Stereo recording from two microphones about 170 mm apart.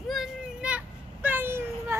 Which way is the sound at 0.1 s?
5° right (ahead or behind).